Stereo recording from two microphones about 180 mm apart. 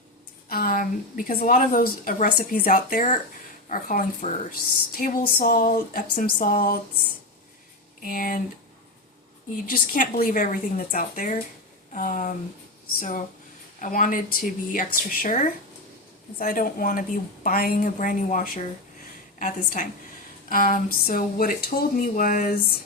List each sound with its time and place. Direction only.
0.4 s a woman's voice: 55° left (ahead or behind)
8.0 s a woman's voice: 50° left (ahead or behind)
9.6 s a woman's voice: 50° left (ahead or behind)